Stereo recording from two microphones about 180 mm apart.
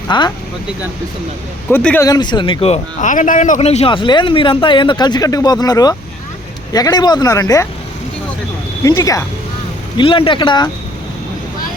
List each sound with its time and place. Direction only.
0.1 s speech: 25° left (ahead or behind)
1.7 s speech: 10° left (ahead or behind)
2.0 s speech: 25° left (ahead or behind)
8.8 s speech: 15° left (ahead or behind)
10.0 s speech: 30° left (ahead or behind)